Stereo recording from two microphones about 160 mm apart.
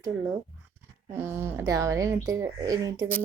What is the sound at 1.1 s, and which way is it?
Speech, 15° right (ahead or behind).